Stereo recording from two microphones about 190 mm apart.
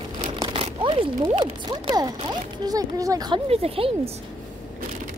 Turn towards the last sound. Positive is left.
turn(degrees=-30)  # may be behind; listen again after turning